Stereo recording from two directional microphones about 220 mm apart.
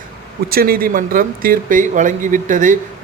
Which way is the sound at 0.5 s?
45° right (ahead or behind).